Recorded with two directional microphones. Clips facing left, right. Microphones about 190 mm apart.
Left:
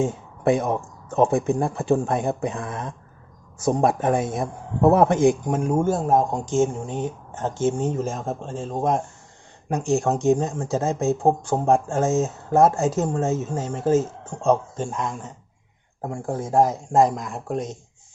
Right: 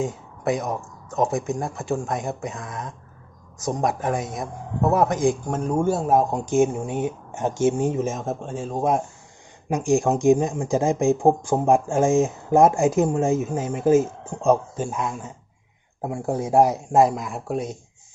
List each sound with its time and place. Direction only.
0.0 s speech: 25° left (ahead or behind)
5.5 s speech: 5° left (ahead or behind)